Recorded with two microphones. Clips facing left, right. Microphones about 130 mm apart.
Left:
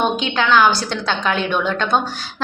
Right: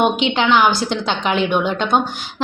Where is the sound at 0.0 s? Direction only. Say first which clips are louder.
Right 3 dB; 20° right (ahead or behind).